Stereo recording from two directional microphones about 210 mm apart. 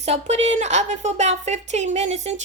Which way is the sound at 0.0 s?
30° right (ahead or behind).